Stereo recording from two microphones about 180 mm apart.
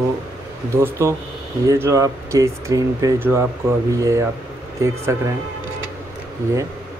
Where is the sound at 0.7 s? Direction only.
15° right (ahead or behind).